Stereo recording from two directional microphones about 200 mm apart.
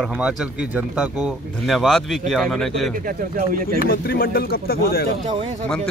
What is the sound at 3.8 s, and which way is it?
Speech, 45° left (ahead or behind).